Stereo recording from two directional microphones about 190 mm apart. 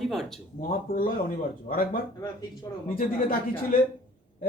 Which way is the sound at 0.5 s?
50° left (ahead or behind).